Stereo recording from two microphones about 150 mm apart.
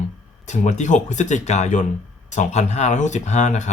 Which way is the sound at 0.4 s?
55° left (ahead or behind).